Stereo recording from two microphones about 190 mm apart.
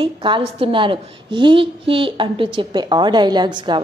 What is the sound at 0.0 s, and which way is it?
A woman's voice, 25° right (ahead or behind).